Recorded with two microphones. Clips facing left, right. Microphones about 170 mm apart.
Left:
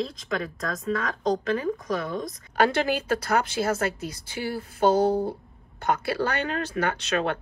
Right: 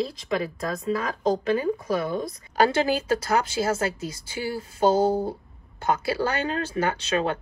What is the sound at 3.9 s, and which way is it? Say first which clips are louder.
Speech: right 1 dB; 60° left (ahead or behind).